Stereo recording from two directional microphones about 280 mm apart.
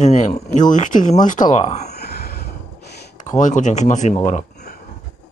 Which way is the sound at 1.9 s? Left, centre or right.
Left.